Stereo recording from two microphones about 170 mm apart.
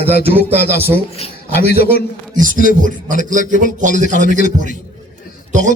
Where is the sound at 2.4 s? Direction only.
50° right (ahead or behind).